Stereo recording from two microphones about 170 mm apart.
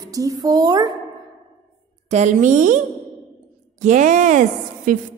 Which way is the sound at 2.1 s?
45° right (ahead or behind).